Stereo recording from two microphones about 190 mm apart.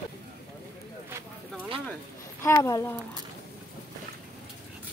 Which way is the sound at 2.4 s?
15° left (ahead or behind).